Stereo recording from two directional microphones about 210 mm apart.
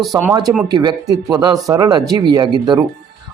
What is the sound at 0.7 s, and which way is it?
Speech, 20° right (ahead or behind).